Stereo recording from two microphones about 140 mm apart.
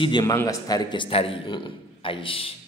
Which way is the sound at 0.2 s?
20° left (ahead or behind).